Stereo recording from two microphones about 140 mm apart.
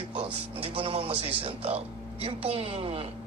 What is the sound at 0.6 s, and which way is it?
A man's voice, 40° right (ahead or behind).